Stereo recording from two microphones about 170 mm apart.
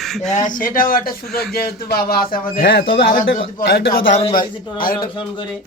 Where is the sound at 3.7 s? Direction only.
70° left (ahead or behind).